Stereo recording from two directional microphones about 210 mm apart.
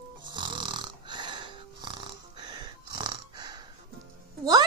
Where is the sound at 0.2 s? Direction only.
20° right (ahead or behind).